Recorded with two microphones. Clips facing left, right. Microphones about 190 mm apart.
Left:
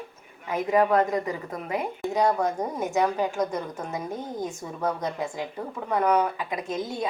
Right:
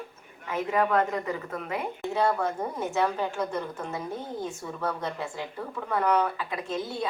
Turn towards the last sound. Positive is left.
turn(degrees=20)  # may be behind; listen again after turning